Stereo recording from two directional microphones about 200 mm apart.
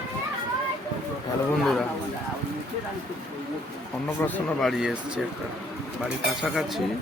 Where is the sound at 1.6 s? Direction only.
Centre (ahead or behind).